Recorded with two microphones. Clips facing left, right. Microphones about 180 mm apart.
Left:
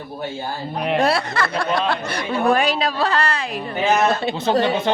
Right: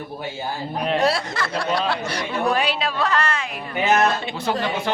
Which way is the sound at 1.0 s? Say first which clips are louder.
Left 2 dB; 60° left (ahead or behind).